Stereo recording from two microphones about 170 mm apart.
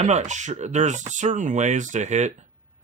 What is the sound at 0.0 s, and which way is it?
Speech, 40° right (ahead or behind).